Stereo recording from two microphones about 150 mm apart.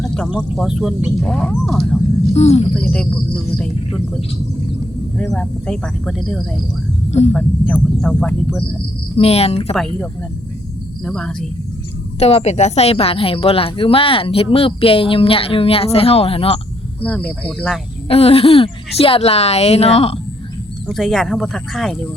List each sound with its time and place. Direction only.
0.0 s snake: 5° left (ahead or behind)
0.3 s speech: centre (ahead or behind)
2.3 s speech: 45° left (ahead or behind)
2.7 s speech: 10° left (ahead or behind)
3.6 s a sound: 5° left (ahead or behind)
5.3 s speech: 5° left (ahead or behind)
7.1 s speech: 45° left (ahead or behind)
7.3 s speech: 5° left (ahead or behind)
9.1 s a woman's voice: 40° left (ahead or behind)
9.7 s speech: centre (ahead or behind)
12.2 s a woman's voice: 45° left (ahead or behind)
17.0 s speech: 10° left (ahead or behind)
18.1 s a woman's voice: 40° left (ahead or behind)
20.8 s speech: centre (ahead or behind)